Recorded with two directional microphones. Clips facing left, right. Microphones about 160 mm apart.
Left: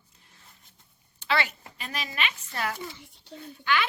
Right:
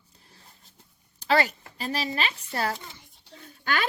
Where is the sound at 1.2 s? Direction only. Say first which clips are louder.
Right 5 dB; 40° right (ahead or behind).